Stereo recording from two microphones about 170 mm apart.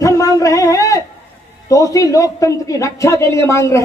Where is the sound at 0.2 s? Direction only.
20° left (ahead or behind).